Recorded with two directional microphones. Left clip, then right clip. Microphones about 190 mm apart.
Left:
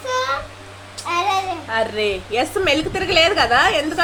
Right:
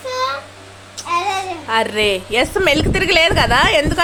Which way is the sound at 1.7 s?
45° right (ahead or behind).